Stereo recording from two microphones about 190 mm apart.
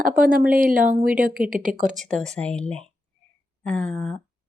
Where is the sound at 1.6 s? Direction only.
45° right (ahead or behind).